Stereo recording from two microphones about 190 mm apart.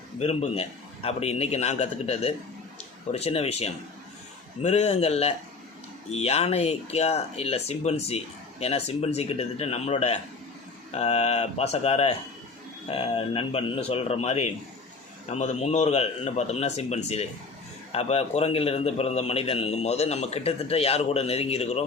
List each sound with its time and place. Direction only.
0.2 s speech: 35° left (ahead or behind)